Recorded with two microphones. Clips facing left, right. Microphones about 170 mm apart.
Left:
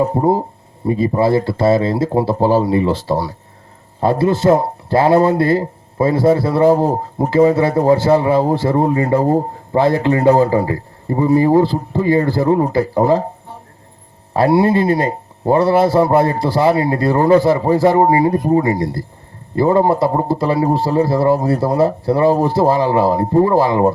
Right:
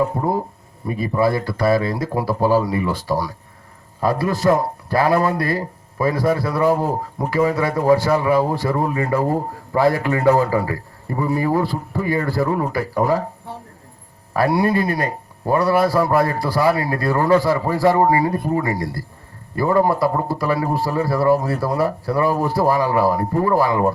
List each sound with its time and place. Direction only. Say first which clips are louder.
0.0 s a man's voice: left 5 dB; 30° left (ahead or behind)
14.3 s a man's voice: left 5 dB; 25° left (ahead or behind)